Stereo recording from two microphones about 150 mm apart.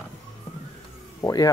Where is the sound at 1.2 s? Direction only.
20° left (ahead or behind).